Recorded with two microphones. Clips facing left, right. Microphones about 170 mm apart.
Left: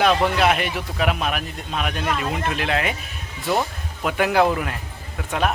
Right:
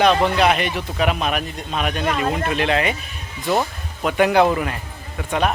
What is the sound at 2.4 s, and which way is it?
A child's voice, centre (ahead or behind).